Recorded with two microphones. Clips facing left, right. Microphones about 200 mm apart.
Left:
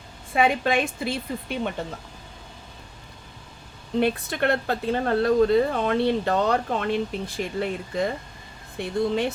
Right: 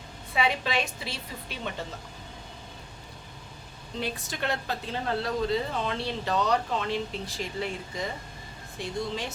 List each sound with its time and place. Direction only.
0.3 s a woman's voice: 50° left (ahead or behind)
4.0 s a woman's voice: 60° left (ahead or behind)